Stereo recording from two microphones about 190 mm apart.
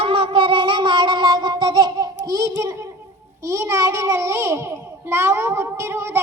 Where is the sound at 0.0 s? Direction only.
25° right (ahead or behind).